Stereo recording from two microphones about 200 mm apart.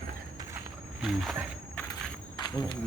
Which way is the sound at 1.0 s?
Centre (ahead or behind).